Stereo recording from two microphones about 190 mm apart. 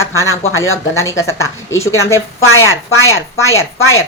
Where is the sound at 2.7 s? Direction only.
90° left.